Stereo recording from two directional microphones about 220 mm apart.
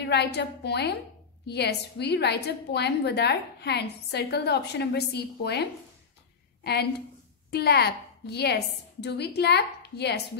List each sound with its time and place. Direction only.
0.0 s a woman's voice: 50° left (ahead or behind)